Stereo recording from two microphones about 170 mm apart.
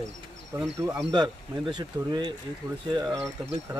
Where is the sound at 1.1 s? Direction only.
25° right (ahead or behind).